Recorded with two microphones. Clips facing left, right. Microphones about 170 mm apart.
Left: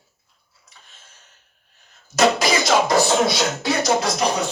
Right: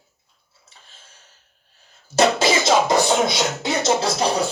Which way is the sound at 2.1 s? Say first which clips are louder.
Even; 30° right (ahead or behind).